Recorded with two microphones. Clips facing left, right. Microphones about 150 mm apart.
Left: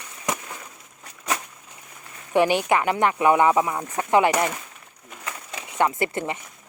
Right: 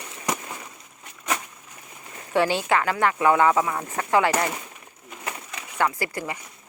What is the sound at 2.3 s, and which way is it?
Speech, 15° left (ahead or behind).